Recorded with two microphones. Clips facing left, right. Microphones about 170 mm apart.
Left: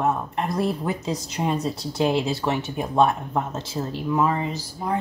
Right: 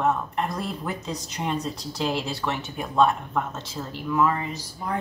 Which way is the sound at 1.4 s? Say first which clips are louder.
Left 3 dB; 10° left (ahead or behind).